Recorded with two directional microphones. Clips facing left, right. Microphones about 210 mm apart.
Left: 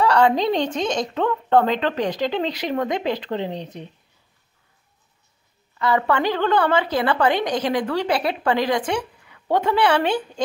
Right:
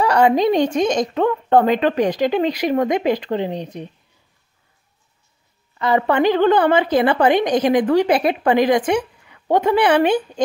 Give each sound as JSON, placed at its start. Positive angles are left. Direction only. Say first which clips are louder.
{"t": 0.0, "sound": "a woman's voice", "louder": "right 3 dB", "side_deg": -15}
{"t": 5.8, "sound": "a woman's voice", "louder": "right 3 dB", "side_deg": -20}